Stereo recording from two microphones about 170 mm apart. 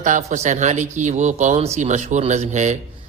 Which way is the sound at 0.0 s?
45° right (ahead or behind).